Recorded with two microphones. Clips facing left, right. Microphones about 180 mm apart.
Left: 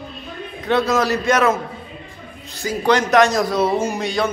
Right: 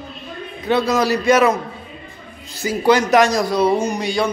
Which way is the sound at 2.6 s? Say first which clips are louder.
Right 2 dB; 5° right (ahead or behind).